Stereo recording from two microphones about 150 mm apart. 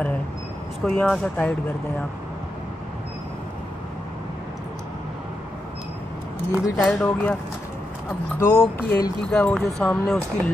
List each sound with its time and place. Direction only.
0.8 s speech: 5° left (ahead or behind)
6.5 s speech: 5° right (ahead or behind)
7.0 s speech: 10° left (ahead or behind)
8.4 s speech: 15° left (ahead or behind)